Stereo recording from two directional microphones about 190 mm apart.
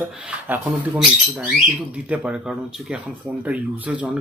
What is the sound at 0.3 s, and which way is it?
Speech, 5° right (ahead or behind).